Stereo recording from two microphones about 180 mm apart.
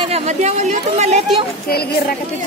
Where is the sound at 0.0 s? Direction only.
35° right (ahead or behind).